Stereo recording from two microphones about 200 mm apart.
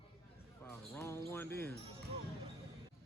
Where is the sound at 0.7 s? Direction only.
15° left (ahead or behind).